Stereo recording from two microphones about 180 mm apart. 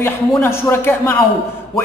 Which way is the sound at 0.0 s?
15° left (ahead or behind).